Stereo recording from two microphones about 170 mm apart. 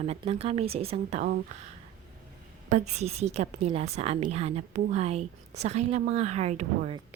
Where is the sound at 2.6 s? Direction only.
40° right (ahead or behind).